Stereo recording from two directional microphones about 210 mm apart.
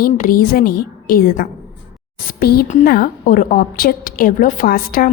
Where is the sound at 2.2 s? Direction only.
45° left (ahead or behind).